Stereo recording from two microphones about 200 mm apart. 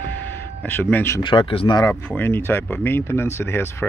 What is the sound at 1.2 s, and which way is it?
Speech, 25° left (ahead or behind).